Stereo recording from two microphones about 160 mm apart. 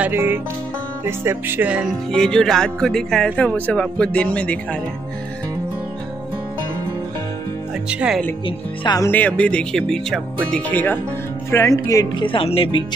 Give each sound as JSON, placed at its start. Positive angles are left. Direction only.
{"t": 0.0, "sound": "speech", "side_deg": -15}
{"t": 2.1, "sound": "speech", "side_deg": 5}
{"t": 7.9, "sound": "speech", "side_deg": -5}
{"t": 8.5, "sound": "speech", "side_deg": 25}
{"t": 9.1, "sound": "speech", "side_deg": 10}
{"t": 12.3, "sound": "speech", "side_deg": 35}